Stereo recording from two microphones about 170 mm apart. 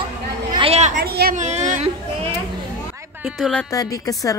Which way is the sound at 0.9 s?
65° right (ahead or behind).